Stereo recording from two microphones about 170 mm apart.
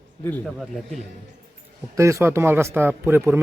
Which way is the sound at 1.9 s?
15° right (ahead or behind).